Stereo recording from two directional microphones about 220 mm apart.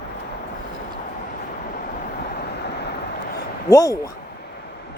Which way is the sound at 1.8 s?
45° left (ahead or behind).